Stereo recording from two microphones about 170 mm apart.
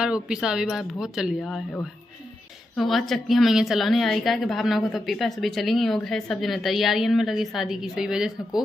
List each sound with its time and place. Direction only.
0.0 s a woman's voice: 5° right (ahead or behind)